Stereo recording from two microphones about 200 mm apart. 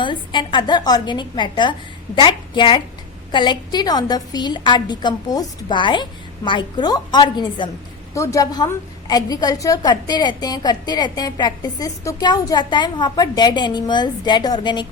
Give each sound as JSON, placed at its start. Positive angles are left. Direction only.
{"t": 0.0, "sound": "a woman's voice", "side_deg": 25}